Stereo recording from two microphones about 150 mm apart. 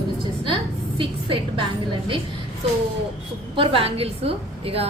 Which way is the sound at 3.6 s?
40° right (ahead or behind).